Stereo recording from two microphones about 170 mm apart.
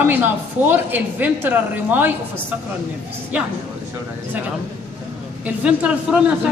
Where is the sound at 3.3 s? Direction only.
10° right (ahead or behind).